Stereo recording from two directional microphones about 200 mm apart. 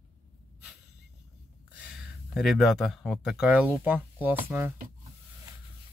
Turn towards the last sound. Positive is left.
turn(degrees=-10)  # may be behind; listen again after turning